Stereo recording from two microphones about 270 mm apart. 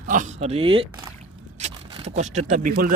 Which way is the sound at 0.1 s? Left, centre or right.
Right.